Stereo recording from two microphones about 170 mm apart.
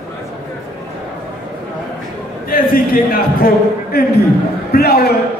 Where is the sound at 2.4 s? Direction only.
55° left (ahead or behind).